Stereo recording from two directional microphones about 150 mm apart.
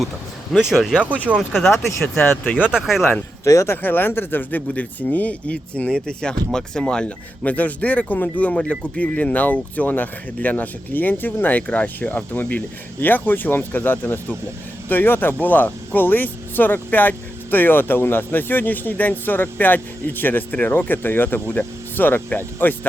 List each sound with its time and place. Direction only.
0.5 s speech: centre (ahead or behind)
2.0 s speech: 10° left (ahead or behind)
2.7 s speech: centre (ahead or behind)
3.4 s speech: 20° left (ahead or behind)